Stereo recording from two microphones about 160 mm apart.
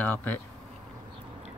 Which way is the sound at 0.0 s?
10° left (ahead or behind).